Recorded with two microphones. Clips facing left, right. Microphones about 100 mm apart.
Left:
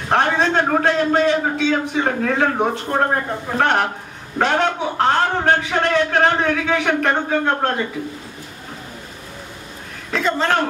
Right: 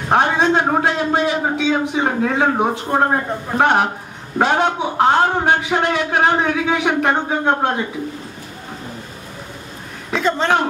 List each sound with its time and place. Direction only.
0.1 s a man's voice: 15° right (ahead or behind)
10.1 s a woman's voice: centre (ahead or behind)